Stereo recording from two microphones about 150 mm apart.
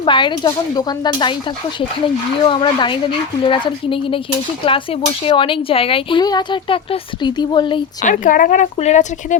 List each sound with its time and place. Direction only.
0.0 s speech: 30° left (ahead or behind)
2.4 s speech: 30° left (ahead or behind)
8.0 s speech: 65° left (ahead or behind)